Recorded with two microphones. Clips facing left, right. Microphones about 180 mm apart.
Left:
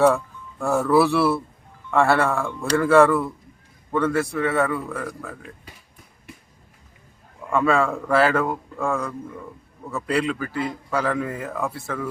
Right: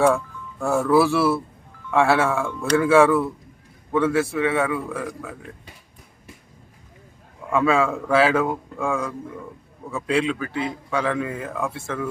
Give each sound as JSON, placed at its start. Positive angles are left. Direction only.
{"t": 0.6, "sound": "speech", "side_deg": 0}
{"t": 7.5, "sound": "speech", "side_deg": 0}